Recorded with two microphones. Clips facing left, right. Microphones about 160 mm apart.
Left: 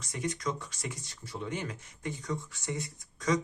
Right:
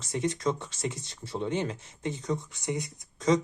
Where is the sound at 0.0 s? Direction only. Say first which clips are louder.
Right 6 dB; 25° right (ahead or behind).